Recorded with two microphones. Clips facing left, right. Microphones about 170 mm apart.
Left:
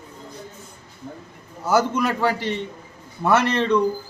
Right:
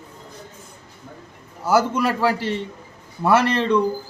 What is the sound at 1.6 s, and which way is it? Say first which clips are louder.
Speech: right 1 dB; 5° right (ahead or behind).